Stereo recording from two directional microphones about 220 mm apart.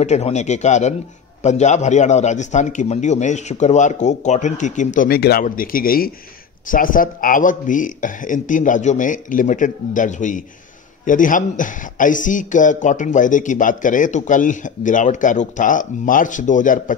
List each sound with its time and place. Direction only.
0.0 s a man's voice: 30° left (ahead or behind)